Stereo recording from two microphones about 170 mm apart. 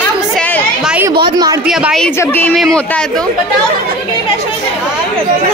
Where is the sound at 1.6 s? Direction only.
Centre (ahead or behind).